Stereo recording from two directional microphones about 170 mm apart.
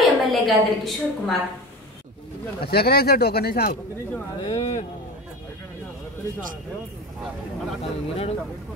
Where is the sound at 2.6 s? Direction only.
65° left (ahead or behind).